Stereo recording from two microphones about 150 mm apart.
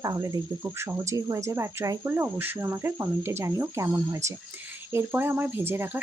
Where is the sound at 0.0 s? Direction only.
20° right (ahead or behind).